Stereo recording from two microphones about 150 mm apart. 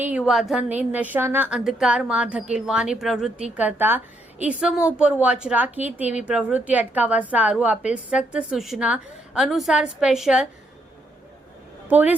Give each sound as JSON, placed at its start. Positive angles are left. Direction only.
{"t": 0.0, "sound": "a woman's voice", "side_deg": -5}
{"t": 11.9, "sound": "speech", "side_deg": -10}